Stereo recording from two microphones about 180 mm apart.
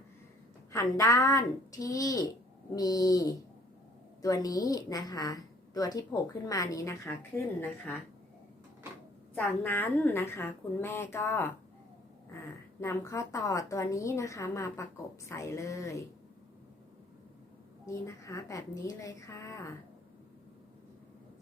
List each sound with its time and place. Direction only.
0.7 s a woman's voice: 15° left (ahead or behind)
9.3 s a woman's voice: 10° left (ahead or behind)
12.8 s a woman's voice: 15° left (ahead or behind)
17.8 s a woman's voice: 15° left (ahead or behind)